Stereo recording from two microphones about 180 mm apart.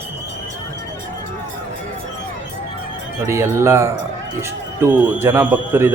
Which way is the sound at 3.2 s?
15° right (ahead or behind).